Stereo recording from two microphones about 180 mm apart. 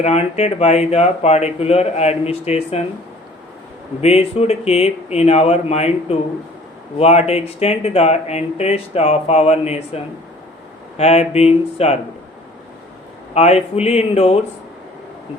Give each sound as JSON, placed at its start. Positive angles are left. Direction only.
{"t": 0.0, "sound": "speech", "side_deg": 35}
{"t": 4.0, "sound": "speech", "side_deg": 35}
{"t": 13.3, "sound": "speech", "side_deg": 35}